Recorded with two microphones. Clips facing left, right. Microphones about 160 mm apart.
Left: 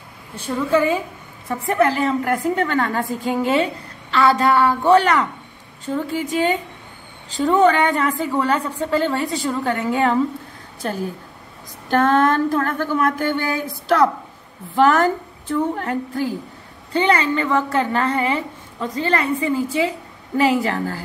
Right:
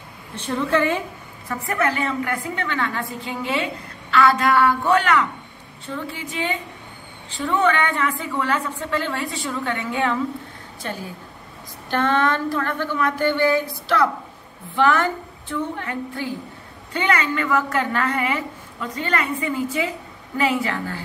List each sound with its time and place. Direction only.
0.5 s a woman's voice: 10° left (ahead or behind)
1.5 s a woman's voice: 30° left (ahead or behind)
11.9 s speech: 45° left (ahead or behind)
14.8 s a woman's voice: 40° left (ahead or behind)
16.9 s a woman's voice: 30° left (ahead or behind)